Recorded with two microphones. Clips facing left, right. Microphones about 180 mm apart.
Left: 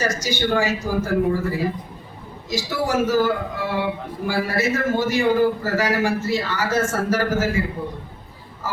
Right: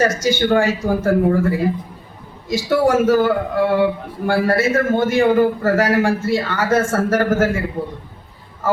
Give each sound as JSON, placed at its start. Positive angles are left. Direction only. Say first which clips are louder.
{"t": 0.2, "sound": "a man's voice", "louder": "right 5 dB", "side_deg": -55}